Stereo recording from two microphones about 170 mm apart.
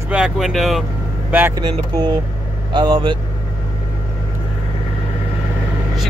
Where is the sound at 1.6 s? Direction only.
25° right (ahead or behind).